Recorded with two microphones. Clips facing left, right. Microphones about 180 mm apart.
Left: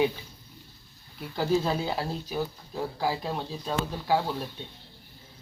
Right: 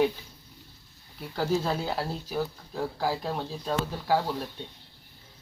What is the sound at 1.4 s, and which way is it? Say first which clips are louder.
Speech: left 1 dB; 10° left (ahead or behind).